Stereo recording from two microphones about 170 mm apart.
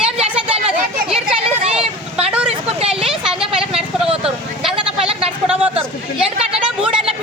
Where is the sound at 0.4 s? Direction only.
35° right (ahead or behind).